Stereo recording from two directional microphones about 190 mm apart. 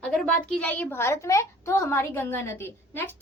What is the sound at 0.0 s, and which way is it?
A woman's voice, 5° left (ahead or behind).